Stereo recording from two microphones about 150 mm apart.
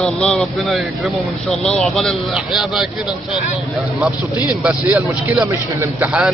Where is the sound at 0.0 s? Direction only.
5° left (ahead or behind).